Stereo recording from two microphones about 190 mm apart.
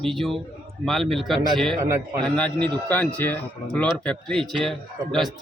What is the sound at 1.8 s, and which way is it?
Speech, 15° right (ahead or behind).